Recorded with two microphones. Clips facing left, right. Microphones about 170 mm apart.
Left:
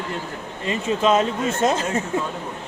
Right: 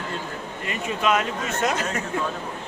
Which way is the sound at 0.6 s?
25° left (ahead or behind).